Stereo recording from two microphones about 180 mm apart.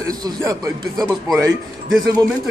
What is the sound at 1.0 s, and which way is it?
Speech, centre (ahead or behind).